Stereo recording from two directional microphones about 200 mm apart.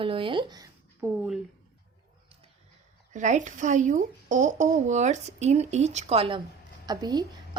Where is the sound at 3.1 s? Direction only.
35° right (ahead or behind).